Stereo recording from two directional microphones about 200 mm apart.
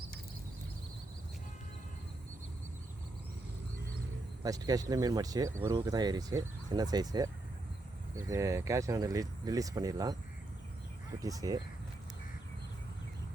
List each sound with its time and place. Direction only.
4.4 s speech: 20° right (ahead or behind)
11.2 s speech: 15° right (ahead or behind)